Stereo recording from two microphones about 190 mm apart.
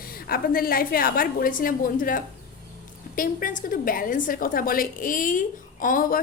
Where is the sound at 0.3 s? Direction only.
50° left (ahead or behind).